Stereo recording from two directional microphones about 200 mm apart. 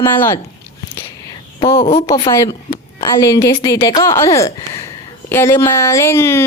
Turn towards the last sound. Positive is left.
turn(degrees=10)  # may be behind; listen again after turning